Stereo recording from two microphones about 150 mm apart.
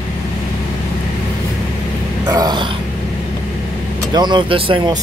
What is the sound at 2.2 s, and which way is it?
Throat clearing, 25° right (ahead or behind).